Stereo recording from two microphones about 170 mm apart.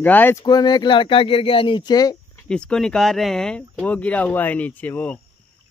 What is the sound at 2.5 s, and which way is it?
Speech, 5° left (ahead or behind).